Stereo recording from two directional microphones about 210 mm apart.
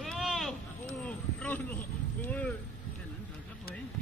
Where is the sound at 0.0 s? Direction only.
Centre (ahead or behind).